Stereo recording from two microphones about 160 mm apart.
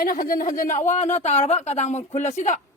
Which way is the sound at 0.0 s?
60° left (ahead or behind).